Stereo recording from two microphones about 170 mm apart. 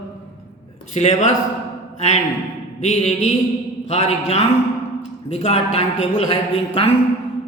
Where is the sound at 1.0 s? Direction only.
40° left (ahead or behind).